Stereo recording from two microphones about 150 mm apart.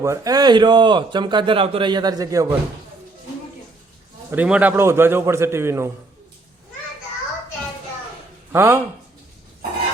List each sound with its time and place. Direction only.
0.0 s a man's voice: 20° right (ahead or behind)
4.3 s a man's voice: 10° right (ahead or behind)
8.5 s a man's voice: 15° right (ahead or behind)